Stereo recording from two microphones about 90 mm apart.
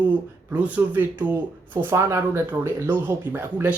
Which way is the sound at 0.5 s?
15° right (ahead or behind).